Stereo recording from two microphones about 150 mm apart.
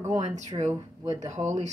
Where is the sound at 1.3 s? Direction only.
50° right (ahead or behind).